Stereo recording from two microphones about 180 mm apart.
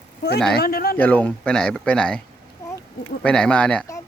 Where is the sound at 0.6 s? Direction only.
55° left (ahead or behind).